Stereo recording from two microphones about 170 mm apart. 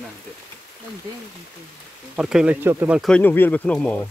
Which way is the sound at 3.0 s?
5° left (ahead or behind).